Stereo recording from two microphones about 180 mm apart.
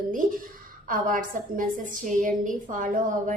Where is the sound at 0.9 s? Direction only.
50° right (ahead or behind).